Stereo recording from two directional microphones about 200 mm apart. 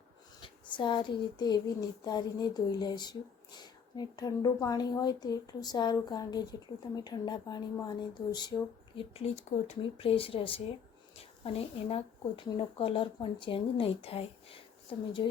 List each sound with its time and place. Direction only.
0.4 s a woman's voice: 25° left (ahead or behind)